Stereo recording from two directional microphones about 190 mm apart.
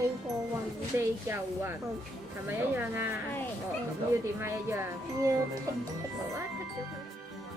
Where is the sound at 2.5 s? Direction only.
10° right (ahead or behind).